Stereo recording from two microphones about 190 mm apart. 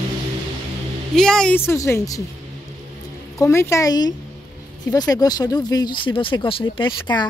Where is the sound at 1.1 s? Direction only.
5° left (ahead or behind).